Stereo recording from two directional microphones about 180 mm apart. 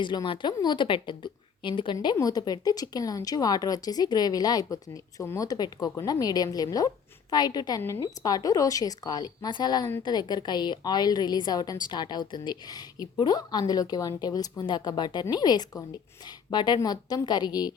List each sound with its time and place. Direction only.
0.0 s a woman's voice: 25° left (ahead or behind)